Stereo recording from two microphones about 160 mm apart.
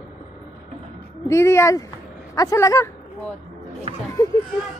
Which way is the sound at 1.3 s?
15° left (ahead or behind).